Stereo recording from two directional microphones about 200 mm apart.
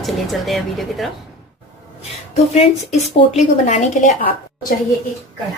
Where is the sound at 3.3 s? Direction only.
35° left (ahead or behind).